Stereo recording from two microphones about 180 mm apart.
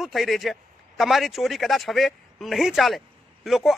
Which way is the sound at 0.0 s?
Centre (ahead or behind).